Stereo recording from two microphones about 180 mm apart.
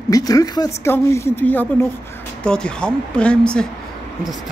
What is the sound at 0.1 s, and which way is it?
Speech, 20° left (ahead or behind).